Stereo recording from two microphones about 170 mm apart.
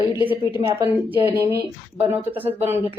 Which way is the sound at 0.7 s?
25° right (ahead or behind).